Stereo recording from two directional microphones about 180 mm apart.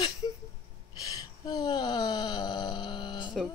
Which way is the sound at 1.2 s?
20° left (ahead or behind).